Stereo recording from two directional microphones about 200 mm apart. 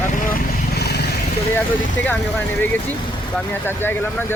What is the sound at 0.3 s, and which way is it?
Vehicle, 55° left (ahead or behind).